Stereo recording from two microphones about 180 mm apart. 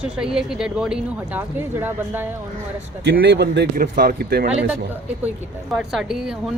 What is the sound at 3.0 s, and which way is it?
Speech, 65° right (ahead or behind).